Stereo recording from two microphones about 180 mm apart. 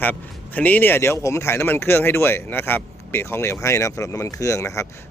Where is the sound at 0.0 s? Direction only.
10° left (ahead or behind).